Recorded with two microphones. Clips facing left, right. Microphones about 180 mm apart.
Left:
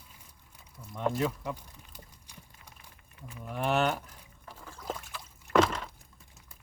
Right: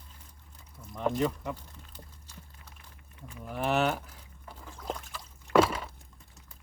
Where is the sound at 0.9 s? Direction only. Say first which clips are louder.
Right 1 dB; centre (ahead or behind).